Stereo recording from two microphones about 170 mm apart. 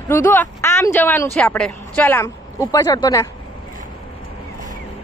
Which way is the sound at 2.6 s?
20° left (ahead or behind).